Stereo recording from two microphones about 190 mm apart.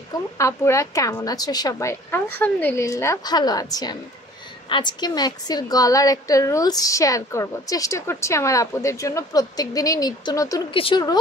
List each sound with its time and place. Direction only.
0.1 s a woman's voice: 15° left (ahead or behind)